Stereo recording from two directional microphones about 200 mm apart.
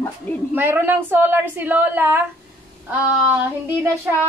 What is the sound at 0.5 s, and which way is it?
A woman's voice, 10° right (ahead or behind).